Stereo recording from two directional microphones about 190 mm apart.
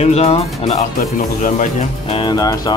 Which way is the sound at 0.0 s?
30° left (ahead or behind).